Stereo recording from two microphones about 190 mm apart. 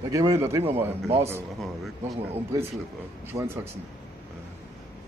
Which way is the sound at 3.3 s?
15° right (ahead or behind).